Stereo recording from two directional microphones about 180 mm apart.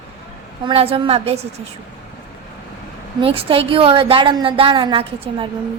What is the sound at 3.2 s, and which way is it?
A woman's voice, 30° right (ahead or behind).